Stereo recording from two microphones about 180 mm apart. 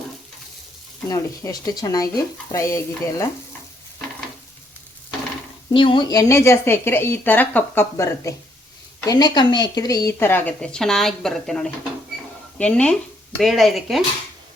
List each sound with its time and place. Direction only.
1.0 s speech: 20° left (ahead or behind)
5.7 s a woman's voice: 30° left (ahead or behind); by 14.0 s centre (ahead or behind)